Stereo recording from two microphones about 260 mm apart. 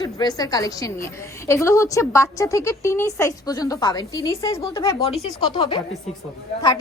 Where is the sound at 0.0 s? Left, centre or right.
Centre.